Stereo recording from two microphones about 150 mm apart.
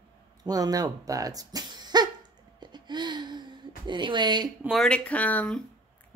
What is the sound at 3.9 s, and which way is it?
Speech, 30° right (ahead or behind).